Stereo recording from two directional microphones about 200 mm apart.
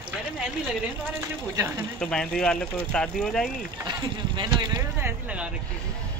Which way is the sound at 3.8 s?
20° right (ahead or behind).